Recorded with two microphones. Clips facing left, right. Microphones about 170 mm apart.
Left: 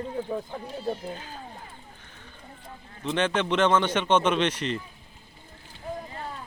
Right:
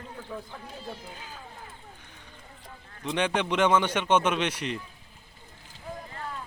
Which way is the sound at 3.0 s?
10° right (ahead or behind).